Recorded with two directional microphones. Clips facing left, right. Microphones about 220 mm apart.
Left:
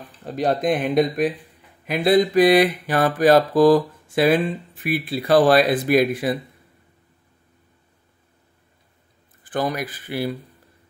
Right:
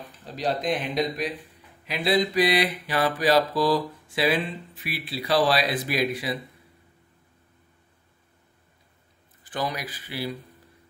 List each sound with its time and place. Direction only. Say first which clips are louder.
0.2 s mantra: left 6 dB; 55° left (ahead or behind)
9.4 s mantra: left 6 dB; 50° left (ahead or behind)